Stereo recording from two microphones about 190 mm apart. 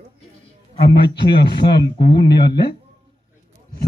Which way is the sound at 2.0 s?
25° left (ahead or behind).